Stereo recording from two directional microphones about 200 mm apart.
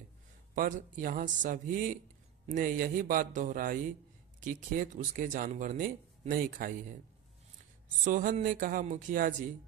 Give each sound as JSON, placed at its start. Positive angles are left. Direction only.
{"t": 0.6, "sound": "a man's voice", "side_deg": -40}
{"t": 8.0, "sound": "speech", "side_deg": -40}